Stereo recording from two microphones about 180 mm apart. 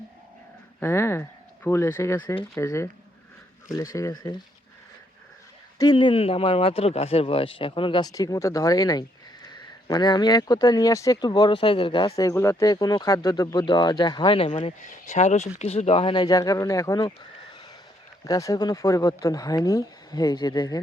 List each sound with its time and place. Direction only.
0.8 s speech: 15° left (ahead or behind)
5.8 s speech: 25° left (ahead or behind)
14.8 s speech: 45° left (ahead or behind); by 17.2 s 20° left (ahead or behind)
18.3 s speech: 20° left (ahead or behind)